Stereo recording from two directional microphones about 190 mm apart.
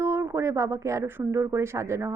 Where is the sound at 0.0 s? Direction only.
15° right (ahead or behind).